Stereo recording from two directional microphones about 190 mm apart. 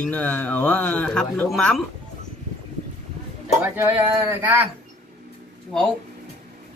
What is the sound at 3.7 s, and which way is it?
Speech, 10° right (ahead or behind).